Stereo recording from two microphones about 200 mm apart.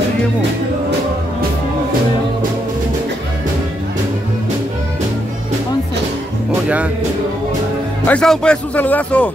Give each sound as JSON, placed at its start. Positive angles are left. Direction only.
{"t": 8.1, "sound": "speech", "side_deg": 5}